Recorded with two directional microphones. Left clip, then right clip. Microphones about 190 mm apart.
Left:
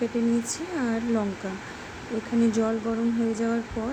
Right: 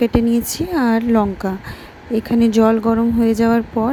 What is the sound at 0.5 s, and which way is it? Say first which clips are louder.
Speech: right 11 dB; 45° right (ahead or behind).